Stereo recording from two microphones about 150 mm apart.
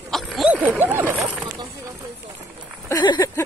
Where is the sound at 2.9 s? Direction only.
30° left (ahead or behind).